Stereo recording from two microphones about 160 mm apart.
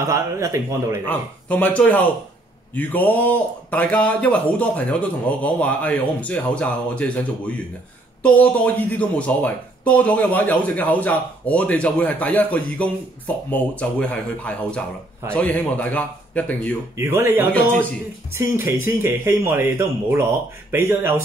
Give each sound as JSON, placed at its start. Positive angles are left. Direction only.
{"t": 0.1, "sound": "a man's voice", "side_deg": -20}
{"t": 1.0, "sound": "a man's voice", "side_deg": 10}
{"t": 16.9, "sound": "speech", "side_deg": -15}
{"t": 17.5, "sound": "a man's voice", "side_deg": 10}
{"t": 18.3, "sound": "speech", "side_deg": -15}